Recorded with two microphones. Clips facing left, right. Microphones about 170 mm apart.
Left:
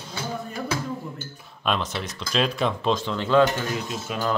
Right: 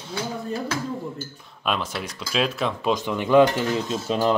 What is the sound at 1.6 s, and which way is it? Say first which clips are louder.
Speech: even; 5° right (ahead or behind).